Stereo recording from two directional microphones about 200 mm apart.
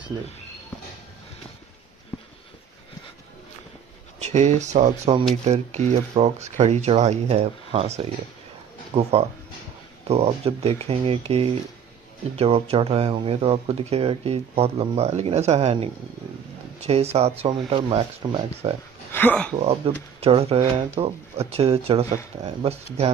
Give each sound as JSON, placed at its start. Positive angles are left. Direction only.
{"t": 4.2, "sound": "speech", "side_deg": -35}
{"t": 19.1, "sound": "speech", "side_deg": 10}
{"t": 19.5, "sound": "speech", "side_deg": -30}